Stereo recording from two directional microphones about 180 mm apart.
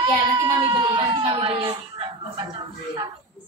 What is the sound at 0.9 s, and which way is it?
A child's voice, 25° right (ahead or behind).